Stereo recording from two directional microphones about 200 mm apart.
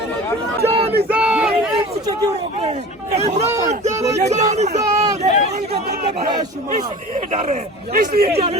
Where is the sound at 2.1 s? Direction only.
20° right (ahead or behind).